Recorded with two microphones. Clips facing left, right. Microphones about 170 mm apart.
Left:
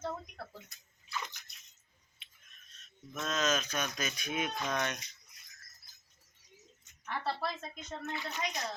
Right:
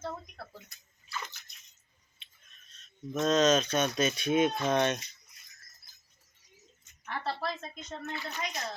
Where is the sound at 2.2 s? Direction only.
30° right (ahead or behind).